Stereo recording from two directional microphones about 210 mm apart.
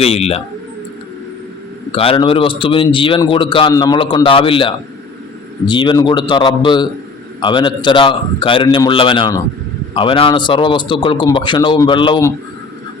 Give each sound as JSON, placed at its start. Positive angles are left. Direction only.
{"t": 0.0, "sound": "speech", "side_deg": 30}
{"t": 1.9, "sound": "speech", "side_deg": 25}